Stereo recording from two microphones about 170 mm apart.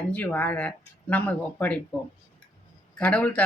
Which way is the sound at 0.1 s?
10° left (ahead or behind).